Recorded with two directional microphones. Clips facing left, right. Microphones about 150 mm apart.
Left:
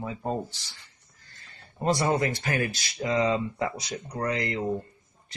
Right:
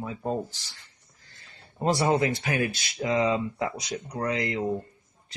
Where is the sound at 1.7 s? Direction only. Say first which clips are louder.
Even; 20° right (ahead or behind).